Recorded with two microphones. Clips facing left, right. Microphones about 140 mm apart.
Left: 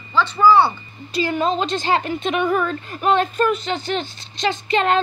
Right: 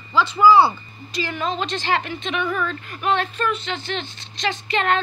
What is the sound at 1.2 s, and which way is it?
A woman's voice, 35° left (ahead or behind).